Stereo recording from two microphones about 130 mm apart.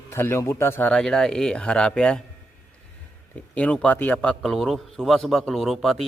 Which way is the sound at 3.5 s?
10° left (ahead or behind).